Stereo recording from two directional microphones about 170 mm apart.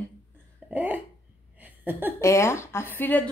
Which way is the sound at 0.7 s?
10° right (ahead or behind).